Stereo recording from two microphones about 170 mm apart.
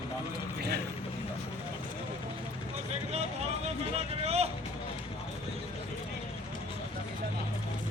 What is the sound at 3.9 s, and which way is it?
Speech, 35° right (ahead or behind).